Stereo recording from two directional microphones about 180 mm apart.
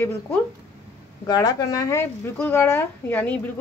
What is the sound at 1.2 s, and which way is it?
A woman's voice, 20° left (ahead or behind).